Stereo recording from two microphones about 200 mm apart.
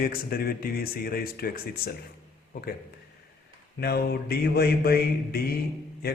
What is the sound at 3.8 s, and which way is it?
A man's voice, 50° left (ahead or behind).